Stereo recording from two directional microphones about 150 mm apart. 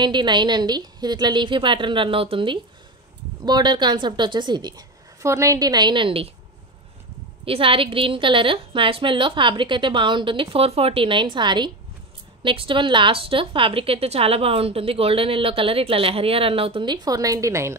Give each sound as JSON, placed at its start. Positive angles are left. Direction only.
{"t": 0.0, "sound": "a woman's voice", "side_deg": -30}
{"t": 7.4, "sound": "a woman's voice", "side_deg": -35}